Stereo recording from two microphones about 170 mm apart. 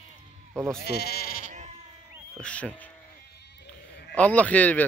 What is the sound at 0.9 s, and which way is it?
Speech, 70° left (ahead or behind).